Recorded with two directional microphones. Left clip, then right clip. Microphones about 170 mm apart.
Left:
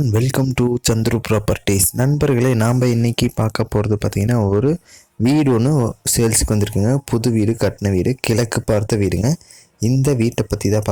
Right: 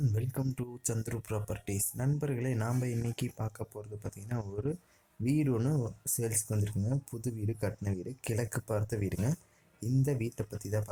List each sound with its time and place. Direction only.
0.1 s speech: 50° left (ahead or behind)